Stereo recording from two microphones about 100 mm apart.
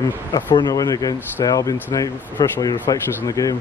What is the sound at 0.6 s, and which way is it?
Speech, 40° left (ahead or behind).